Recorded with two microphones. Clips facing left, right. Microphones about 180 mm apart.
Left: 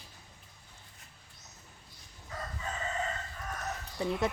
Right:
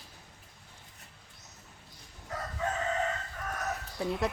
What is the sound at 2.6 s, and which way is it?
Crowing, 70° right (ahead or behind).